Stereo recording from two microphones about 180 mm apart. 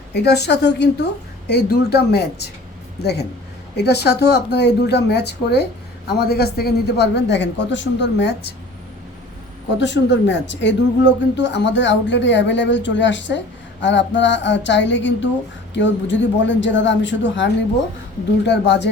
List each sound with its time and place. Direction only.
0.1 s a man's voice: 65° left (ahead or behind)
9.7 s speech: 75° left (ahead or behind)
18.4 s a man's voice: 75° left (ahead or behind)